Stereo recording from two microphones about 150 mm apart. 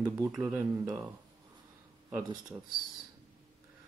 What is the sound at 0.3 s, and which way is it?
Speech, centre (ahead or behind).